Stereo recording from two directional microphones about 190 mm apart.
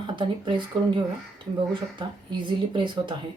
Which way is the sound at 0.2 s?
25° right (ahead or behind).